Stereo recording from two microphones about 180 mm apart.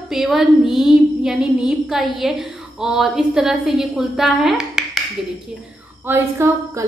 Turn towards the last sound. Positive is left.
turn(degrees=-15)  # may be behind; listen again after turning